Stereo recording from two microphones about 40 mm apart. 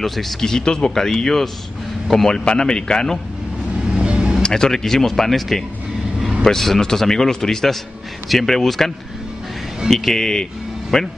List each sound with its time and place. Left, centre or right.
0.0 s a man's voice: centre
2.3 s a man's voice: left
4.0 s vehicle: right
4.4 s speech: centre